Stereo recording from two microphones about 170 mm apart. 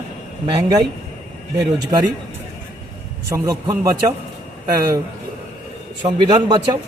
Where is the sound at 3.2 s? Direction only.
20° right (ahead or behind).